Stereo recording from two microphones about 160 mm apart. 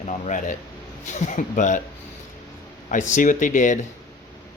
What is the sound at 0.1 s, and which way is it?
Speech, 50° left (ahead or behind).